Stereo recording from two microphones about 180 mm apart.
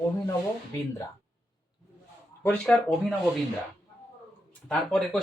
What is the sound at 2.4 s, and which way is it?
Speech, 10° left (ahead or behind).